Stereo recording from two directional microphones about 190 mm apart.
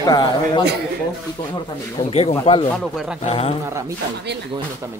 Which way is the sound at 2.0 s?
35° left (ahead or behind).